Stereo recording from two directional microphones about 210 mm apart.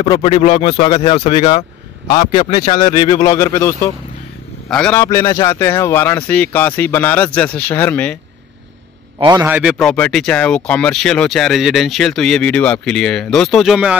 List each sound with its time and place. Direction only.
0.1 s speech: 20° left (ahead or behind)
2.6 s a man's voice: 20° left (ahead or behind)
9.2 s a man's voice: 20° right (ahead or behind)
9.5 s speech: 5° right (ahead or behind)